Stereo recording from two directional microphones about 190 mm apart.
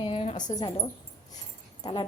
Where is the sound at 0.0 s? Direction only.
30° left (ahead or behind).